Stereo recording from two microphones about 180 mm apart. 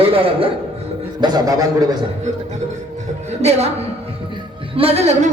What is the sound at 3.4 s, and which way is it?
Speech, 35° right (ahead or behind).